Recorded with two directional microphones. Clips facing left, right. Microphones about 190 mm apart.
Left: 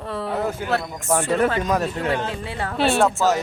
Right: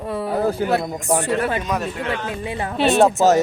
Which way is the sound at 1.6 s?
40° left (ahead or behind).